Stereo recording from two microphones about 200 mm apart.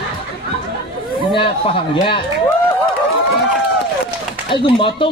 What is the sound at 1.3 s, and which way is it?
Speech, 30° left (ahead or behind).